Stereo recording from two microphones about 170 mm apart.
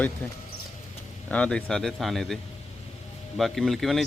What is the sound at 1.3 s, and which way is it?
Speech, 5° left (ahead or behind).